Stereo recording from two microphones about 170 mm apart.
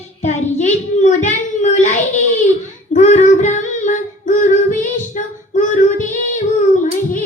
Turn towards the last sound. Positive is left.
turn(degrees=50)  # may be behind; listen again after turning